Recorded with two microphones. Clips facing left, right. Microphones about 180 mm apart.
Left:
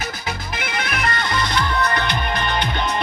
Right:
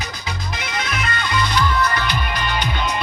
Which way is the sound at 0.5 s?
60° left (ahead or behind).